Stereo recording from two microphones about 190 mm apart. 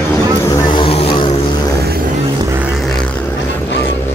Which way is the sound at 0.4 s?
20° left (ahead or behind).